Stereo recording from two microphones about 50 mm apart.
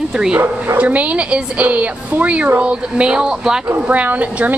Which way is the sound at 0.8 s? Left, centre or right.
Right.